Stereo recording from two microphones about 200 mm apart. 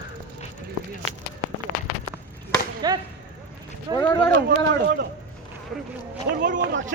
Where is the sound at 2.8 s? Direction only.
20° right (ahead or behind).